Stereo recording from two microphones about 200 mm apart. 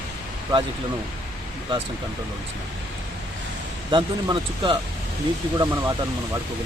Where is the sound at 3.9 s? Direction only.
20° right (ahead or behind).